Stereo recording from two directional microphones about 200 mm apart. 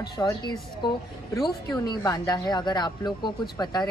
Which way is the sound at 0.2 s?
20° left (ahead or behind).